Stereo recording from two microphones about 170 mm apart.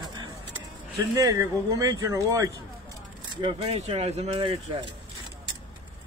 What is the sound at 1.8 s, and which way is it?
Speech, 20° right (ahead or behind).